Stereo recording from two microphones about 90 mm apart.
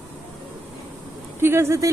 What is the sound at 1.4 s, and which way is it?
Speech, 30° right (ahead or behind).